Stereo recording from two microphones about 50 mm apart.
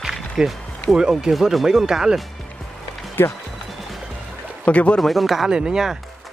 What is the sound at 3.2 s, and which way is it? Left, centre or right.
Speech, left.